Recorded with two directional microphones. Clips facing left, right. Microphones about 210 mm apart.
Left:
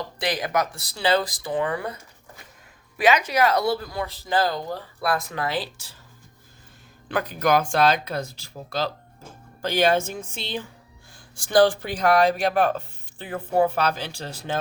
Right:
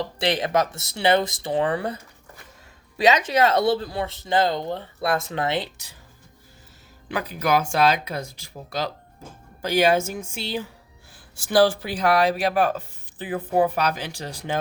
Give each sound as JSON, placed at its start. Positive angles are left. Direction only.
{"t": 0.2, "sound": "speech", "side_deg": -25}
{"t": 3.0, "sound": "speech", "side_deg": -25}
{"t": 7.3, "sound": "speech", "side_deg": -5}